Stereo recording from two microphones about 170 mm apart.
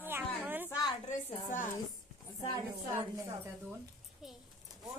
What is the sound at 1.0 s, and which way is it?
Speech, 45° left (ahead or behind).